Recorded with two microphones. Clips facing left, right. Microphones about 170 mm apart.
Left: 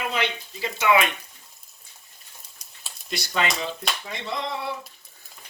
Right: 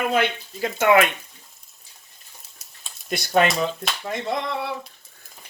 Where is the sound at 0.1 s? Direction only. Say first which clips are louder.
Right 6 dB; 50° right (ahead or behind).